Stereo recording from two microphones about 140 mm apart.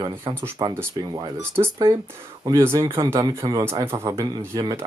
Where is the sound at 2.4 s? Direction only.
20° right (ahead or behind).